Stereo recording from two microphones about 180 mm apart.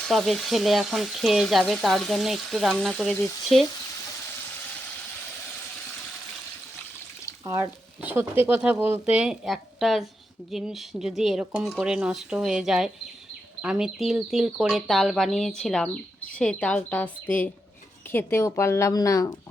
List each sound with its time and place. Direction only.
0.1 s speech: centre (ahead or behind)
7.4 s speech: 15° right (ahead or behind); by 19.4 s 20° left (ahead or behind)